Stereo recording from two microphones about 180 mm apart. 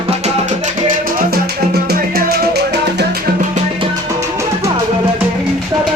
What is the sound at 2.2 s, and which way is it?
Music, 60° right (ahead or behind).